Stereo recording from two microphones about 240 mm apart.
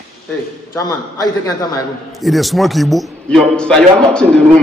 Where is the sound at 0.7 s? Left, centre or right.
Centre.